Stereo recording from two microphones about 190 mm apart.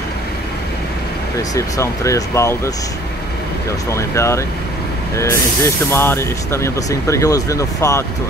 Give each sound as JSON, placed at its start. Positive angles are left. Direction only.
{"t": 1.5, "sound": "speech", "side_deg": 15}
{"t": 3.9, "sound": "speech", "side_deg": 15}